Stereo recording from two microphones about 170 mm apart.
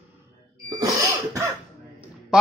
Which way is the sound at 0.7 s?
20° right (ahead or behind).